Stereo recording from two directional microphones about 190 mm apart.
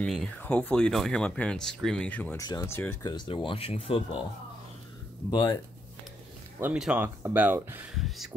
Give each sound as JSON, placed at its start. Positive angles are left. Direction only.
{"t": 0.0, "sound": "speech", "side_deg": 0}
{"t": 5.3, "sound": "speech", "side_deg": 20}
{"t": 6.6, "sound": "speech", "side_deg": -5}